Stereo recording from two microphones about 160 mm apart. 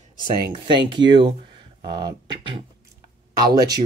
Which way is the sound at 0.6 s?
30° right (ahead or behind).